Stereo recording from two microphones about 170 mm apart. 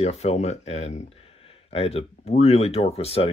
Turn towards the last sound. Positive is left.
turn(degrees=35)  # may be behind; listen again after turning